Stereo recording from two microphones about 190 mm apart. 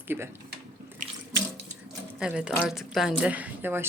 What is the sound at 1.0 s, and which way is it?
Sink, 40° right (ahead or behind).